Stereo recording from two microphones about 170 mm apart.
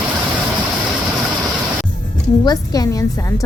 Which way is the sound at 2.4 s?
20° left (ahead or behind).